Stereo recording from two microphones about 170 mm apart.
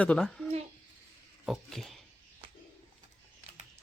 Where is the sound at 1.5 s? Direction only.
Centre (ahead or behind).